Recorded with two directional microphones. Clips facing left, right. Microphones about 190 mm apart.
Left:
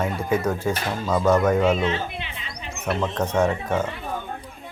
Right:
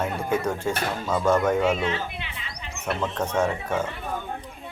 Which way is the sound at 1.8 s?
20° left (ahead or behind).